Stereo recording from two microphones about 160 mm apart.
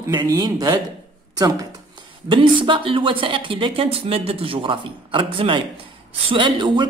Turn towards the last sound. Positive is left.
turn(degrees=-30)  # may be behind; listen again after turning